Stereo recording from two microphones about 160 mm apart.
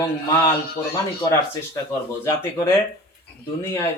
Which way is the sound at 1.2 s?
20° left (ahead or behind).